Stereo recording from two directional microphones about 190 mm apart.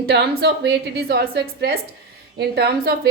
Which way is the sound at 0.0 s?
55° right (ahead or behind).